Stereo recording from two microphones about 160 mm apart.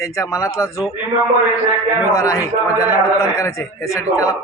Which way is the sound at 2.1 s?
20° left (ahead or behind).